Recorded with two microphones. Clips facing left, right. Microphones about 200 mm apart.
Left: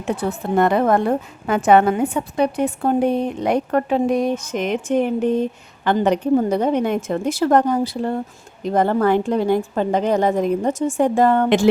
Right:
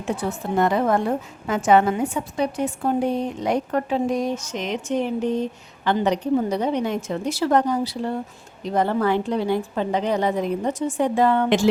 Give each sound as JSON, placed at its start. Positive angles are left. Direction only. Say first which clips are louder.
{"t": 0.2, "sound": "a woman's voice", "louder": "left 4 dB", "side_deg": 60}